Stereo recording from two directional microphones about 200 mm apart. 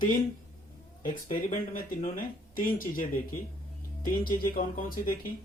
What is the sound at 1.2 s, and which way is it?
Speech, 35° left (ahead or behind).